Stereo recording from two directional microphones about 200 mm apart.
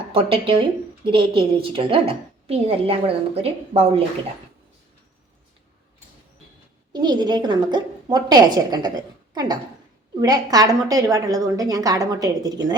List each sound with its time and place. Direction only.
0.1 s a woman's voice: 25° right (ahead or behind)
6.9 s a woman's voice: 20° right (ahead or behind)